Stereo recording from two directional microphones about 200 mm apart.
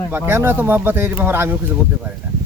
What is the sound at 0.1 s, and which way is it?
Speech, 10° right (ahead or behind).